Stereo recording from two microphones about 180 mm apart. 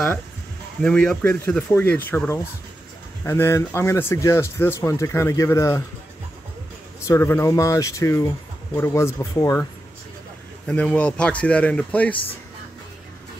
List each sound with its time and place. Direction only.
0.8 s speech: 5° left (ahead or behind)
7.1 s speech: 15° left (ahead or behind)
10.7 s speech: 5° left (ahead or behind)